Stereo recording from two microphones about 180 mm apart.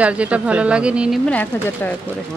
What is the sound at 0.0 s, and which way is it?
Speech, 5° right (ahead or behind).